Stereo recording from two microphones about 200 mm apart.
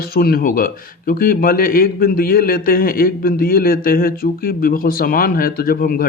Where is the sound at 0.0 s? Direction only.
50° left (ahead or behind).